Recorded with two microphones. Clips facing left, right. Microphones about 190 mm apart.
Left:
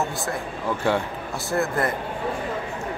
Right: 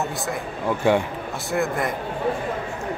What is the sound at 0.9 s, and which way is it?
Speech, 15° right (ahead or behind).